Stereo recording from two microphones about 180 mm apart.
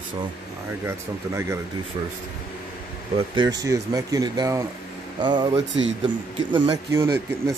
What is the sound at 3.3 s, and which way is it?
Speech, 20° right (ahead or behind).